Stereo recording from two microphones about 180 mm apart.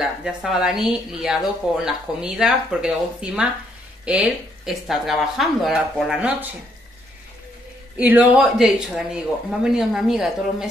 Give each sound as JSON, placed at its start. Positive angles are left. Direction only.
{"t": 0.0, "sound": "speech", "side_deg": 0}
{"t": 8.0, "sound": "speech", "side_deg": -10}